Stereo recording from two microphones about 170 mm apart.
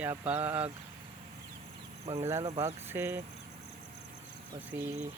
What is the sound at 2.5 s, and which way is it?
Speech, 40° right (ahead or behind).